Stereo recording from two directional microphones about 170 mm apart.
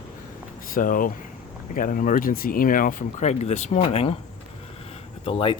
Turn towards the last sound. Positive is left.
turn(degrees=30)  # may be behind; listen again after turning